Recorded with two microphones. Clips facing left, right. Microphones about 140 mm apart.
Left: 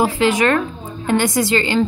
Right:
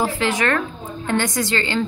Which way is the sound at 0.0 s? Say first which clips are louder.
Left 5 dB; 15° left (ahead or behind).